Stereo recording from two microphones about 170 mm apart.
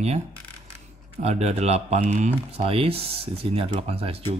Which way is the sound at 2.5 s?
35° right (ahead or behind).